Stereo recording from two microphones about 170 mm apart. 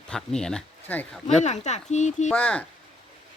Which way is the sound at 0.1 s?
5° left (ahead or behind).